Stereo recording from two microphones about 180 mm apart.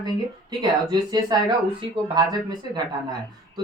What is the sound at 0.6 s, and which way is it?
Speech, 20° right (ahead or behind).